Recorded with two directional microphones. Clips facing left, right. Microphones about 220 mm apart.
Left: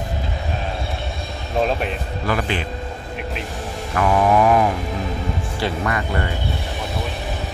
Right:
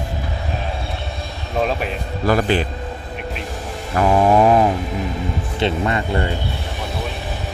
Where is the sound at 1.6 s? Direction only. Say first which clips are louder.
Even; centre (ahead or behind).